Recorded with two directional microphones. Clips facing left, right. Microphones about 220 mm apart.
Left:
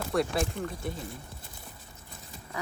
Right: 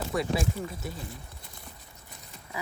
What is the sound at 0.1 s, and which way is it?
Speech, centre (ahead or behind).